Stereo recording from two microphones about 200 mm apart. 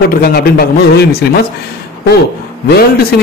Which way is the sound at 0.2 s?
50° left (ahead or behind).